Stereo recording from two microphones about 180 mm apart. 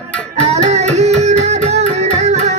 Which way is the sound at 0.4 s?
40° right (ahead or behind).